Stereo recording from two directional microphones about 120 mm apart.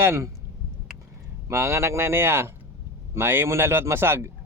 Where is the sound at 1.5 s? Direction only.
25° right (ahead or behind).